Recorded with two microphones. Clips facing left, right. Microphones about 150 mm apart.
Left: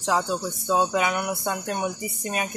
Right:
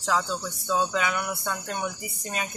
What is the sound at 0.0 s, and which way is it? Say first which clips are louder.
Speech: left 3 dB; 20° left (ahead or behind).